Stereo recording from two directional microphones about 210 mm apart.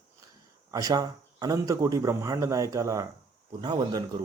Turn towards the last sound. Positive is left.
turn(degrees=-20)  # may be behind; listen again after turning